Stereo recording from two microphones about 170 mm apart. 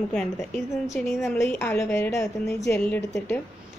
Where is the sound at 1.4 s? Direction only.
10° left (ahead or behind).